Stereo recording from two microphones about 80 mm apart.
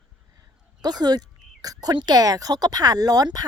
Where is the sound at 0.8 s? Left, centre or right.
Right.